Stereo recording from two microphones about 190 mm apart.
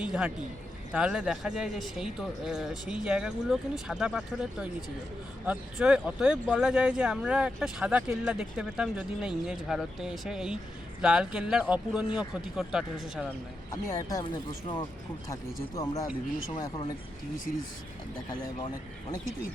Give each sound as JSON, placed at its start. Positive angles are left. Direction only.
{"t": 0.0, "sound": "a man's voice", "side_deg": -5}
{"t": 13.2, "sound": "speech", "side_deg": 15}
{"t": 15.7, "sound": "speech", "side_deg": 15}